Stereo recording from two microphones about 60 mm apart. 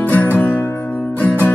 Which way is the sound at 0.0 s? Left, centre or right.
Left.